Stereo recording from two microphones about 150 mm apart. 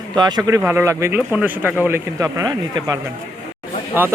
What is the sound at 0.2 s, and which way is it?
Speech, 25° right (ahead or behind).